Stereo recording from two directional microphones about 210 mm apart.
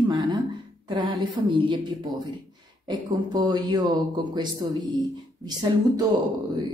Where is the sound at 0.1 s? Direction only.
20° right (ahead or behind).